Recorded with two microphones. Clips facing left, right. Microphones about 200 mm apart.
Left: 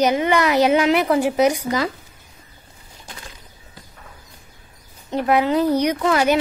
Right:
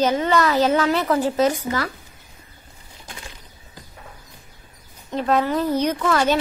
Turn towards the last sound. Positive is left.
turn(degrees=15)  # may be behind; listen again after turning